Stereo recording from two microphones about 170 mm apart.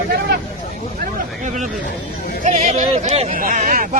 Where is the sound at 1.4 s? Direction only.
45° right (ahead or behind).